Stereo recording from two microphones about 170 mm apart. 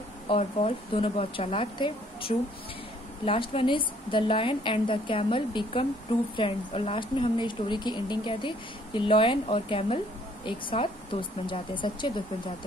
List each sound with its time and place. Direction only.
0.3 s a woman's voice: 35° left (ahead or behind)